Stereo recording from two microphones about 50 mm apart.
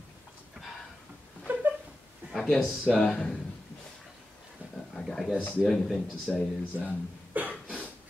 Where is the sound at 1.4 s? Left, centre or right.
Right.